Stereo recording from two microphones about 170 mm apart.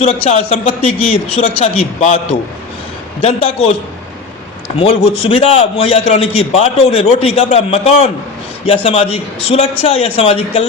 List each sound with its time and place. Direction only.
0.0 s a man's voice: 40° left (ahead or behind)
3.2 s a man's voice: 40° left (ahead or behind)
5.3 s a man's voice: 35° left (ahead or behind)